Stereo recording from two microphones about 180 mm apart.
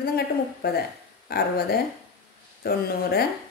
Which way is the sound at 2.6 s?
60° left (ahead or behind).